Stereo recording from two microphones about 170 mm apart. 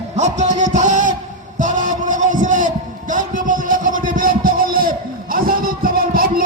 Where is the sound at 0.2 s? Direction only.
45° right (ahead or behind).